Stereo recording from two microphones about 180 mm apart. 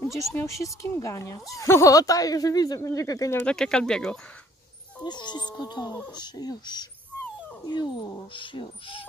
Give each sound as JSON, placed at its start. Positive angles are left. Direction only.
{"t": 0.0, "sound": "speech", "side_deg": 15}
{"t": 3.5, "sound": "speech", "side_deg": 5}
{"t": 5.0, "sound": "speech", "side_deg": 25}